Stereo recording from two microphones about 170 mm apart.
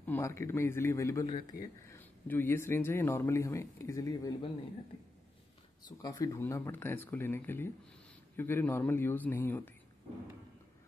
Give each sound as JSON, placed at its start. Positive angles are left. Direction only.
{"t": 0.0, "sound": "speech", "side_deg": 15}
{"t": 2.0, "sound": "speech", "side_deg": 10}
{"t": 5.9, "sound": "speech", "side_deg": 20}